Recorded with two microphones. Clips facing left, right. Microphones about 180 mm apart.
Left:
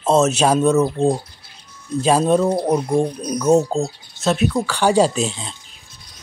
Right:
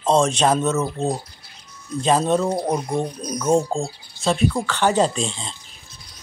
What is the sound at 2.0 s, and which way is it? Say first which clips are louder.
A woman's voice: left 3 dB; 10° left (ahead or behind).